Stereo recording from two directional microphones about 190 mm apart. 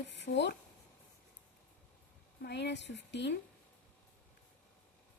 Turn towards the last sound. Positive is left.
turn(degrees=65)  # may be behind; listen again after turning